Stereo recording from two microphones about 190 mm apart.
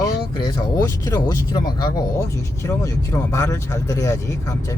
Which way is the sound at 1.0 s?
20° left (ahead or behind).